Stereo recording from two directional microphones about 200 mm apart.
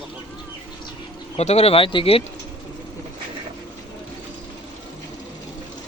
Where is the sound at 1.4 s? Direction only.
35° left (ahead or behind).